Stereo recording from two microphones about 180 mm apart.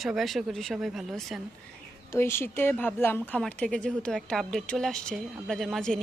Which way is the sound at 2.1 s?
15° left (ahead or behind).